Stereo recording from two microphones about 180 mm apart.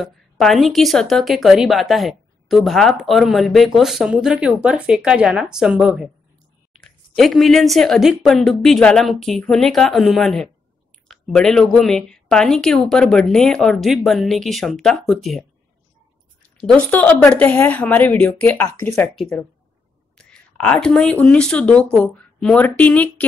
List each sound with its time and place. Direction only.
0.0 s speech: centre (ahead or behind)
16.5 s speech: 5° left (ahead or behind)